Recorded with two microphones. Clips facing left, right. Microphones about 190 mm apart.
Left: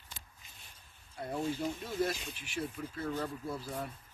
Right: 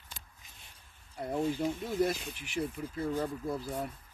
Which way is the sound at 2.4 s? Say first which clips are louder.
Right 4 dB; 15° right (ahead or behind).